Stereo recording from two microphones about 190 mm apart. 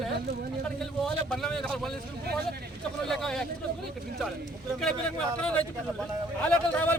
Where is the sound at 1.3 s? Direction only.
Centre (ahead or behind).